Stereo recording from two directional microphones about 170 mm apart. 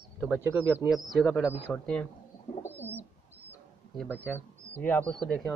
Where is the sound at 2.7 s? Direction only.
10° right (ahead or behind).